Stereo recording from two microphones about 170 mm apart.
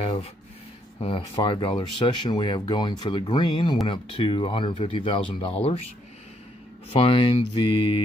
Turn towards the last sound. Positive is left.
turn(degrees=30)  # may be behind; listen again after turning